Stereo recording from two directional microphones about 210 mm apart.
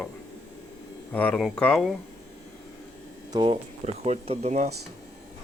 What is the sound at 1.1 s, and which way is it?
Speech, 5° left (ahead or behind).